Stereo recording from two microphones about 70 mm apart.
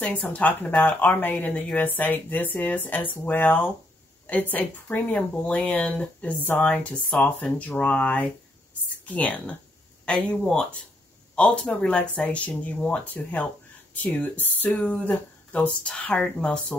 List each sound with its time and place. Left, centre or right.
0.0 s speech: centre